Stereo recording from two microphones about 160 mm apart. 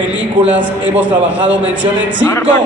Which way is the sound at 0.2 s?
10° right (ahead or behind).